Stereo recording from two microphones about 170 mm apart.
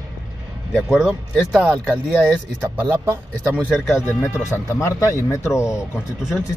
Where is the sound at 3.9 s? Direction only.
15° left (ahead or behind).